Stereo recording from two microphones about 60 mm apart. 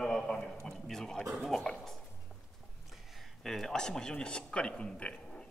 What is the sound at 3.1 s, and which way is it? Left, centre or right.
Speech, centre.